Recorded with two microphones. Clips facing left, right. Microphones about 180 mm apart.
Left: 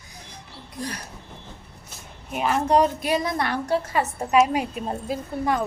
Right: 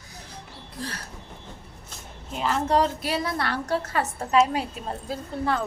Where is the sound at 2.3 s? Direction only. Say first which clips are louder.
Left 3 dB; 15° left (ahead or behind).